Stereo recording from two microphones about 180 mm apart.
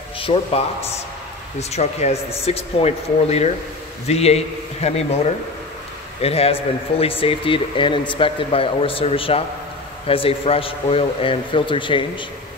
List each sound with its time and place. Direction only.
0.2 s a man's voice: 35° left (ahead or behind)